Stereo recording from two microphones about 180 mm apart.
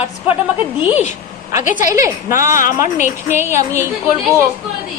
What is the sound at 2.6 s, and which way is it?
Speech, 45° left (ahead or behind).